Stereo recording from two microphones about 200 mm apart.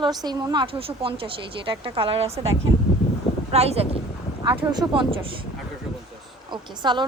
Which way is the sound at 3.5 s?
30° right (ahead or behind).